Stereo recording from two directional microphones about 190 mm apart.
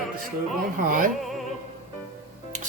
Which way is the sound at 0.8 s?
45° right (ahead or behind).